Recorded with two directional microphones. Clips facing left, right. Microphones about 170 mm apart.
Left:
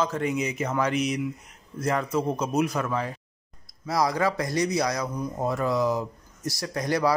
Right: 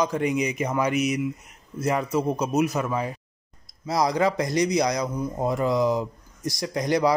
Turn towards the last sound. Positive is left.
turn(degrees=-15)  # may be behind; listen again after turning